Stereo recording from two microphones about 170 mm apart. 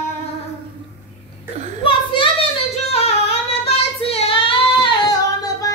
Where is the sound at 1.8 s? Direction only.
30° left (ahead or behind).